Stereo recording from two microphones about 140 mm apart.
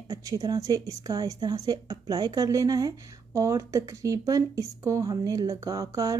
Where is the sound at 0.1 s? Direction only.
25° right (ahead or behind).